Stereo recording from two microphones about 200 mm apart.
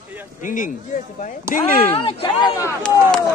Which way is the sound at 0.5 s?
45° left (ahead or behind).